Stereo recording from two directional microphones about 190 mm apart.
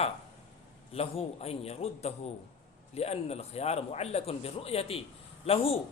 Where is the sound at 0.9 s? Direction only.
30° left (ahead or behind).